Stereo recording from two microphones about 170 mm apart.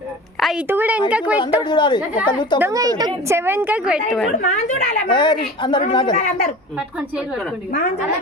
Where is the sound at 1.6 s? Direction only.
25° left (ahead or behind).